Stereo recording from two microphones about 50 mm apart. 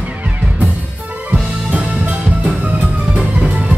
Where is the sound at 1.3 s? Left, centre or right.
Right.